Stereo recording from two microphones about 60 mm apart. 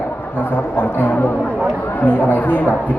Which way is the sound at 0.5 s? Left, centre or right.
Left.